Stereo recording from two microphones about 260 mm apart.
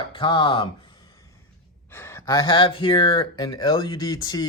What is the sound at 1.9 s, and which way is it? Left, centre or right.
Speech, centre.